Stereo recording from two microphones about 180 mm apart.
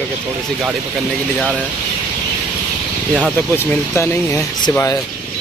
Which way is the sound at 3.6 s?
15° left (ahead or behind).